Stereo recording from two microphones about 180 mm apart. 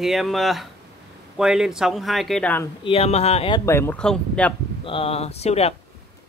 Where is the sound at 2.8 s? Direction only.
35° left (ahead or behind).